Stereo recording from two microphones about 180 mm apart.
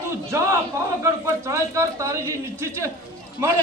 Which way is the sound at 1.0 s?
15° right (ahead or behind).